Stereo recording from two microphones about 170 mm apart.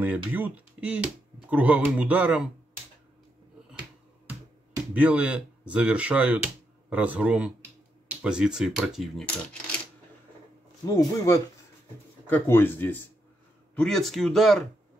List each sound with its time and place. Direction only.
0.0 s speech: 10° right (ahead or behind)
4.9 s speech: 10° right (ahead or behind)
11.0 s speech: 15° left (ahead or behind); by 14.6 s centre (ahead or behind)